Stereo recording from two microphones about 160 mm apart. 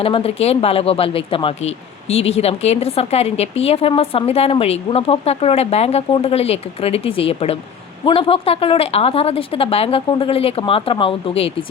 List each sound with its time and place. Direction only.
0.0 s speech: 35° left (ahead or behind)